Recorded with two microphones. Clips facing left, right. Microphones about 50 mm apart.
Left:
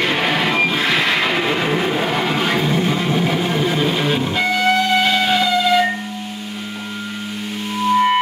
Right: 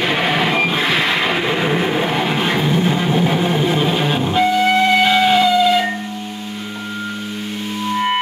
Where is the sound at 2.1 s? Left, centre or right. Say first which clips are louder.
Right 1 dB; centre.